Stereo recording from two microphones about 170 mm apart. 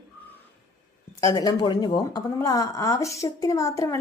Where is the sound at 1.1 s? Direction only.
20° left (ahead or behind).